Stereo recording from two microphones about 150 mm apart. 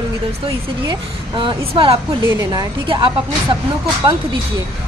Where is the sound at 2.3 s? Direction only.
25° right (ahead or behind).